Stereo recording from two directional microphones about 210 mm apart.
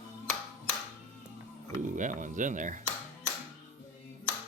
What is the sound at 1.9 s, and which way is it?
Speech, 35° right (ahead or behind).